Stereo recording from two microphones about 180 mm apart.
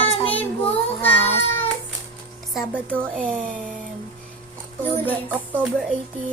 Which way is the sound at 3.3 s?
50° right (ahead or behind).